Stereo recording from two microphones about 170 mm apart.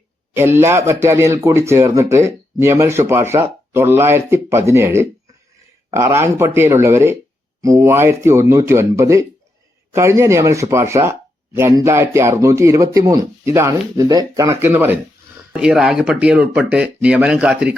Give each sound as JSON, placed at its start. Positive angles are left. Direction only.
{"t": 0.3, "sound": "speech", "side_deg": -15}